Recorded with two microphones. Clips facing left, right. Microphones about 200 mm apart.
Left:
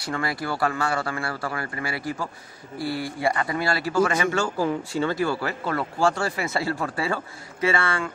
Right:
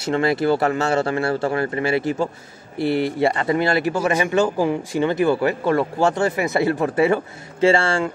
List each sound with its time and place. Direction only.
0.0 s speech: 25° right (ahead or behind)